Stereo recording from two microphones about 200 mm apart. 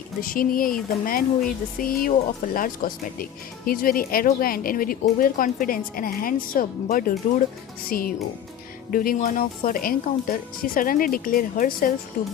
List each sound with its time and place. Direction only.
0.2 s speech: 45° left (ahead or behind)